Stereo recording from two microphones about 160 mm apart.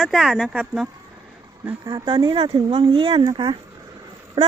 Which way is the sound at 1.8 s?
30° right (ahead or behind).